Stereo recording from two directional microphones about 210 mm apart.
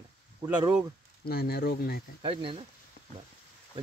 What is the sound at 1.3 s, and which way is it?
Speech, 45° left (ahead or behind).